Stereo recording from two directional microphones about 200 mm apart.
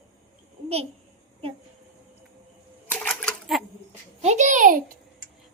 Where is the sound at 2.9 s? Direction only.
5° left (ahead or behind).